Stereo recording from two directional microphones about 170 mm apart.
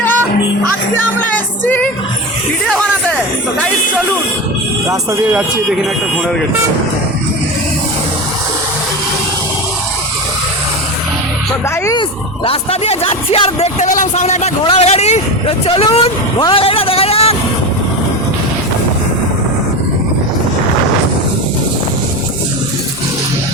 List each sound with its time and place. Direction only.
1.3 s music: 10° left (ahead or behind)
2.6 s speech: 5° left (ahead or behind)
4.9 s speech: 10° right (ahead or behind)
12.5 s speech: 35° left (ahead or behind)